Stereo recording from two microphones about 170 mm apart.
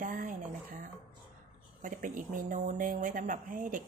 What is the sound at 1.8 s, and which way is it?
Speech, 50° right (ahead or behind).